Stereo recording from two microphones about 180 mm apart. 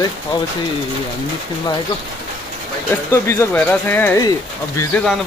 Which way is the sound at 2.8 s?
15° left (ahead or behind).